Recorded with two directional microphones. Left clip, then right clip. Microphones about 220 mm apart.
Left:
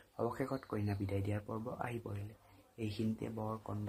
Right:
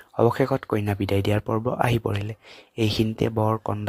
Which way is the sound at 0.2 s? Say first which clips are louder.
Right 18 dB; 40° right (ahead or behind).